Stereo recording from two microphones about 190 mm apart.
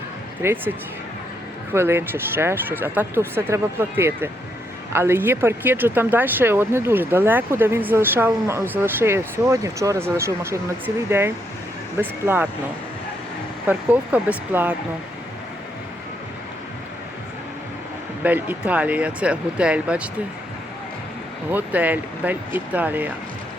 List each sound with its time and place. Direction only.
0.4 s speech: 10° right (ahead or behind)
1.7 s speech: 10° right (ahead or behind)
13.7 s speech: 10° right (ahead or behind)
18.2 s speech: 10° right (ahead or behind)
21.5 s speech: 10° right (ahead or behind)